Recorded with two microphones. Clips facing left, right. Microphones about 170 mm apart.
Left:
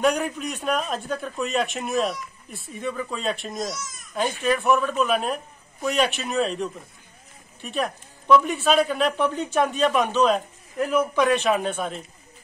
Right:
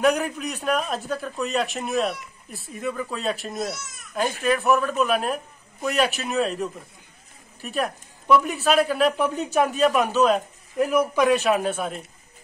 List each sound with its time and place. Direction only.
0.0 s speech: centre (ahead or behind)
3.8 s baby cry: 65° right (ahead or behind)
4.1 s speech: centre (ahead or behind)